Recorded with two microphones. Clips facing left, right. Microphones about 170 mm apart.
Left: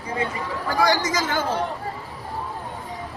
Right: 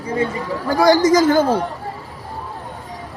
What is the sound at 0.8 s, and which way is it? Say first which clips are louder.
Speech: right 9 dB; 40° right (ahead or behind).